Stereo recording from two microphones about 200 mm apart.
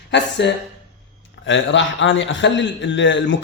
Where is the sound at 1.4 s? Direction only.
70° left (ahead or behind).